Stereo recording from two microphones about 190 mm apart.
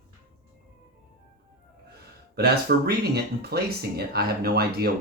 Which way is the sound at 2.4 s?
55° right (ahead or behind).